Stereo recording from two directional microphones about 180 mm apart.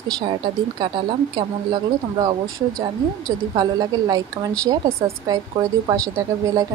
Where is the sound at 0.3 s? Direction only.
25° right (ahead or behind).